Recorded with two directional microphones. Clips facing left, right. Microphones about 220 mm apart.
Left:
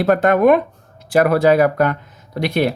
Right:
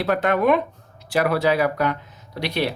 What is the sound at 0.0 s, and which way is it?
Speech, 45° left (ahead or behind).